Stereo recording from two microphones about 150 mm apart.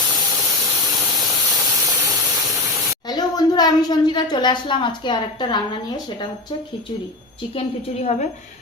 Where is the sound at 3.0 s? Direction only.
25° left (ahead or behind); by 8.3 s 50° left (ahead or behind).